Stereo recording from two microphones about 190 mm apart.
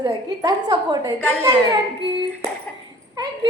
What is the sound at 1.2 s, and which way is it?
Speech, 5° left (ahead or behind).